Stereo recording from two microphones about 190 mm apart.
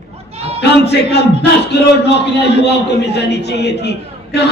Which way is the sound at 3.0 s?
60° left (ahead or behind).